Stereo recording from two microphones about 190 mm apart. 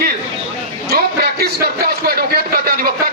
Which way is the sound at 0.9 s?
55° right (ahead or behind).